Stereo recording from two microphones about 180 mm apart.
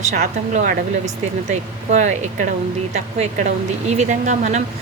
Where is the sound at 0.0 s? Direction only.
40° right (ahead or behind).